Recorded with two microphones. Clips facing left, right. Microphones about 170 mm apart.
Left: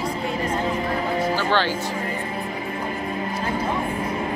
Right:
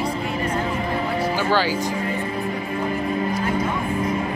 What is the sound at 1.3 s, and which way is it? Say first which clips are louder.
Music: right 3 dB; 5° right (ahead or behind).